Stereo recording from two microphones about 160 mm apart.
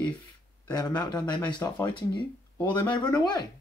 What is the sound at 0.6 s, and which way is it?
Speech, 25° left (ahead or behind).